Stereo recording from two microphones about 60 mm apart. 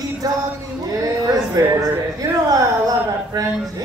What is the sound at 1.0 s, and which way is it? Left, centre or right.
Speech, right.